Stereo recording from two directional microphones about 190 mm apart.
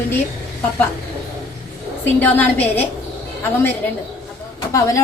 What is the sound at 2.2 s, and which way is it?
Child singing, 10° left (ahead or behind).